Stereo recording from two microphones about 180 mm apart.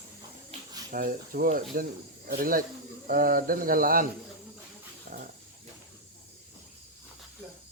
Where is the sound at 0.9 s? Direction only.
50° right (ahead or behind).